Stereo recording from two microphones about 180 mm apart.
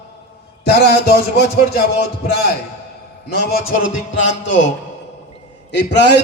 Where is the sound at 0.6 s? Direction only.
60° left (ahead or behind).